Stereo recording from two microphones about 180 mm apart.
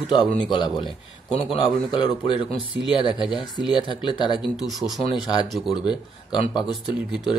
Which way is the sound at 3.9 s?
25° left (ahead or behind).